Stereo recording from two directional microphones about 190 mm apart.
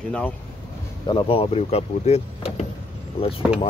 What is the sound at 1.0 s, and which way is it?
Speech, 30° left (ahead or behind).